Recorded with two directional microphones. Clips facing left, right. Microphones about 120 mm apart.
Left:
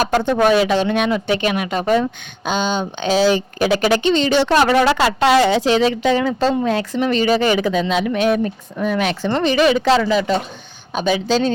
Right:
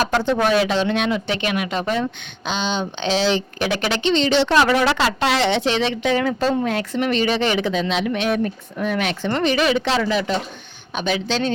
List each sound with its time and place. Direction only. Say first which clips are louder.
0.3 s speech: left 5 dB; 50° left (ahead or behind)
5.5 s speech: left 4 dB; 40° left (ahead or behind)